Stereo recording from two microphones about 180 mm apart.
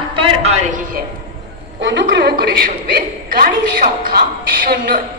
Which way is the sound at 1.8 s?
70° right (ahead or behind).